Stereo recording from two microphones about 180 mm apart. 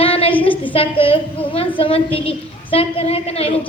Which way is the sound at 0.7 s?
30° left (ahead or behind).